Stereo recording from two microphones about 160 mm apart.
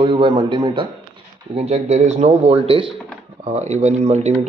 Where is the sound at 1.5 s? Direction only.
40° right (ahead or behind).